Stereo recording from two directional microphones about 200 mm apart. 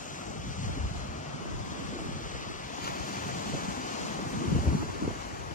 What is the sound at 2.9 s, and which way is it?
Waves, 40° left (ahead or behind).